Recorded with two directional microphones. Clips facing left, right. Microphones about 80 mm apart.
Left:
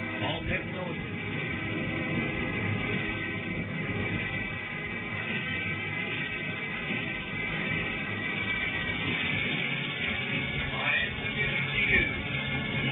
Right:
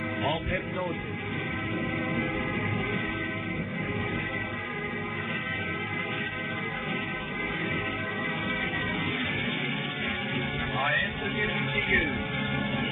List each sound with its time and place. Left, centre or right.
11.4 s music: right